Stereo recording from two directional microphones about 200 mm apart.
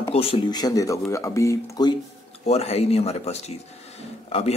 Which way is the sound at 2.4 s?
30° left (ahead or behind).